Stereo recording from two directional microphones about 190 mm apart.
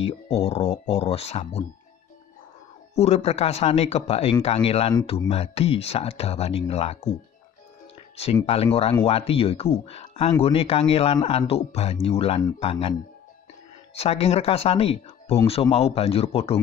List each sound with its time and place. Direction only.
0.0 s speech: 35° left (ahead or behind)
3.0 s speech: 35° left (ahead or behind)
9.0 s speech: 30° left (ahead or behind)
13.9 s speech: 30° left (ahead or behind)